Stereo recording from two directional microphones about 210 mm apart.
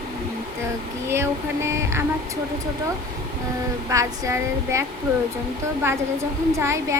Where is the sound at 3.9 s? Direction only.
15° right (ahead or behind).